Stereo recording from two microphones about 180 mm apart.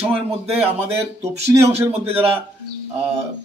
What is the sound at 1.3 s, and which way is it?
A man's voice, 35° right (ahead or behind).